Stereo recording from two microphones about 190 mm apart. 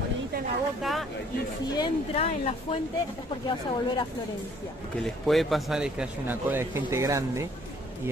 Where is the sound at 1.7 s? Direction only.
25° left (ahead or behind).